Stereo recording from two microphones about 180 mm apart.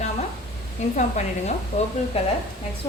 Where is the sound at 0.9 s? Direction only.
40° left (ahead or behind).